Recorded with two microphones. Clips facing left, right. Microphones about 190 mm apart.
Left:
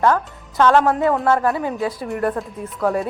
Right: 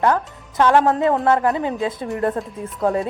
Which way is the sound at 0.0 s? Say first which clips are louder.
Left 1 dB; 20° right (ahead or behind).